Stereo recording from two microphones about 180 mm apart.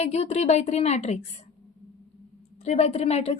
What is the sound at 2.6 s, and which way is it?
Speech, 35° left (ahead or behind).